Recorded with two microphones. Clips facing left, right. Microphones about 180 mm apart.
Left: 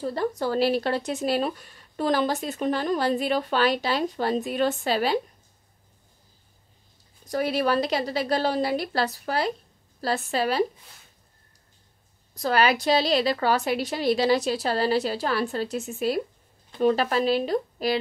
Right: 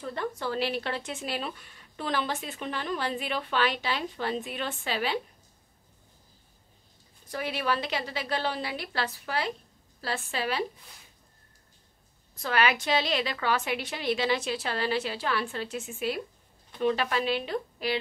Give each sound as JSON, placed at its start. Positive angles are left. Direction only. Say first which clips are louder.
{"t": 0.0, "sound": "speech", "louder": "left 6 dB", "side_deg": 35}
{"t": 7.2, "sound": "speech", "louder": "left 6 dB", "side_deg": 40}
{"t": 12.4, "sound": "speech", "louder": "left 5 dB", "side_deg": 35}